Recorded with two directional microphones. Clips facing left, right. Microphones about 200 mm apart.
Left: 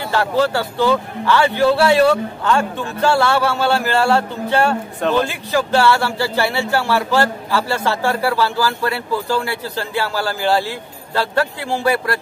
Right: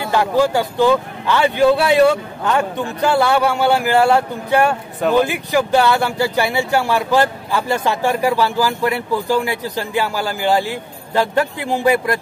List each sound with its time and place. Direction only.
0.0 s a man's voice: 15° right (ahead or behind)